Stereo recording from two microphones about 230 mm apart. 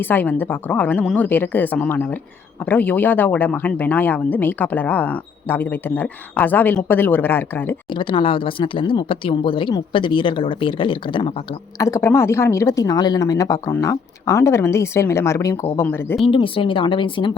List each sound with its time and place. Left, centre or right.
0.0 s speech: centre
7.9 s speech: left
16.2 s speech: left